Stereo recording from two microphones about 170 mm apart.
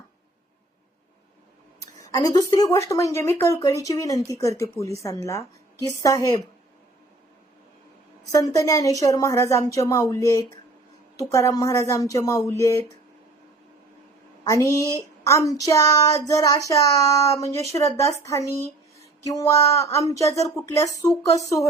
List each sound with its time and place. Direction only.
1.8 s speech: 20° left (ahead or behind)
8.2 s speech: 20° left (ahead or behind)
14.4 s speech: 20° left (ahead or behind)
18.9 s a sound: 20° left (ahead or behind)
20.1 s speech: 20° left (ahead or behind)